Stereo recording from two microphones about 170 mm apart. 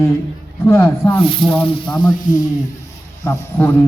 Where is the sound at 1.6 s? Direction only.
25° left (ahead or behind).